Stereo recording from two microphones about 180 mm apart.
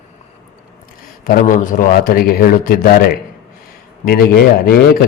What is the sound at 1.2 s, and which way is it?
A man's voice, 45° left (ahead or behind).